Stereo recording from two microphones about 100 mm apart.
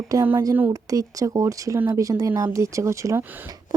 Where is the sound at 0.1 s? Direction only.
35° right (ahead or behind).